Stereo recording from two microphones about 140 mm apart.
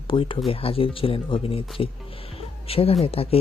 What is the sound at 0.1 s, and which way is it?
Speech, 40° left (ahead or behind).